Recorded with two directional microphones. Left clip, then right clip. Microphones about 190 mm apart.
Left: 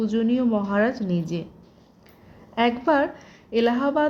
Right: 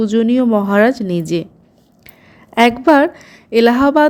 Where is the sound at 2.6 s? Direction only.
30° right (ahead or behind).